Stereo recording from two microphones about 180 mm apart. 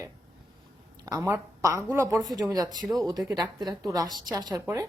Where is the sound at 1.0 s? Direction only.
15° right (ahead or behind).